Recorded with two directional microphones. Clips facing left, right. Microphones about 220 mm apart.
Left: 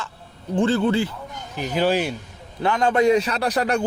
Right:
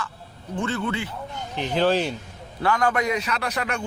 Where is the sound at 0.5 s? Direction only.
30° left (ahead or behind).